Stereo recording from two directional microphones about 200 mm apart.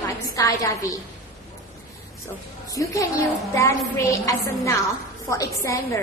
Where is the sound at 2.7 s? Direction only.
15° left (ahead or behind).